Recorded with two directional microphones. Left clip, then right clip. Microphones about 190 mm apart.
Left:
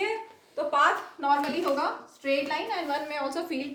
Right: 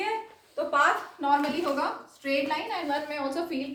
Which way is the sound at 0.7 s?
30° left (ahead or behind).